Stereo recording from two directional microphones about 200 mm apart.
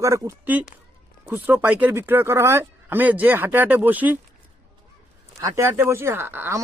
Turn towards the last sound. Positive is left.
turn(degrees=-10)  # may be behind; listen again after turning